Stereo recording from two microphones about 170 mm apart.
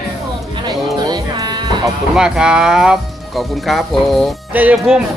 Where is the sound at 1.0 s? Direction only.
25° right (ahead or behind).